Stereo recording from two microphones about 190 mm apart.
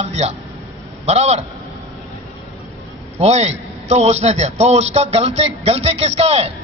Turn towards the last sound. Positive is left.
turn(degrees=-30)  # may be behind; listen again after turning